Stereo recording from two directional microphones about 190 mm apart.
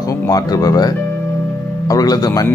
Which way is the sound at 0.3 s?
20° left (ahead or behind).